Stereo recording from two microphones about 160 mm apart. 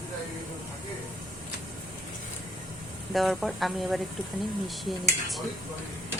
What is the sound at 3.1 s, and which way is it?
Speech, centre (ahead or behind).